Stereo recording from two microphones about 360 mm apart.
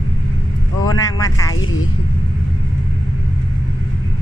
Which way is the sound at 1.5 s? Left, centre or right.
Left.